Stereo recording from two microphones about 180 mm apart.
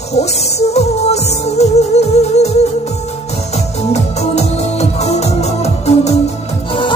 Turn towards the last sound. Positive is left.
turn(degrees=35)  # may be behind; listen again after turning